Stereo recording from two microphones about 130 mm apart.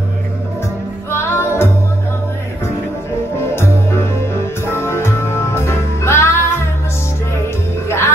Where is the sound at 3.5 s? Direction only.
20° left (ahead or behind).